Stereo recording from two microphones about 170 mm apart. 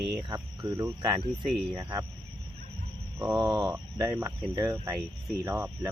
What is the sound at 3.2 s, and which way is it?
Speech, 20° right (ahead or behind).